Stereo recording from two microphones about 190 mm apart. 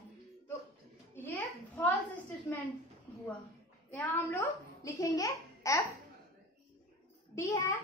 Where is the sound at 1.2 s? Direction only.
10° left (ahead or behind).